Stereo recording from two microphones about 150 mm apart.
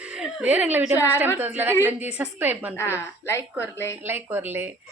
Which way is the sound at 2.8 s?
15° left (ahead or behind).